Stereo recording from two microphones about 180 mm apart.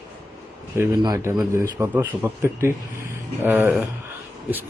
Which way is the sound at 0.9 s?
25° right (ahead or behind).